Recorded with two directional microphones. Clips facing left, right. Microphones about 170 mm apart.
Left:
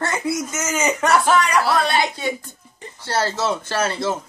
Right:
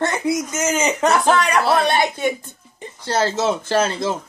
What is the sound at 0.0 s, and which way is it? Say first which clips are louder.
Speech: right 3 dB; 20° right (ahead or behind).